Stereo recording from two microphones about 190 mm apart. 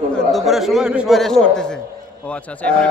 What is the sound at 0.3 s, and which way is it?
A man's voice, centre (ahead or behind).